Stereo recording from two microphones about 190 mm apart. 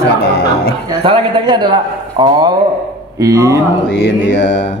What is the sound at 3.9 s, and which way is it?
Mantra, 75° left (ahead or behind).